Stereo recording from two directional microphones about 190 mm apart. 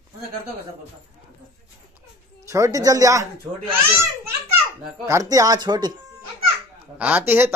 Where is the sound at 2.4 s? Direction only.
15° right (ahead or behind).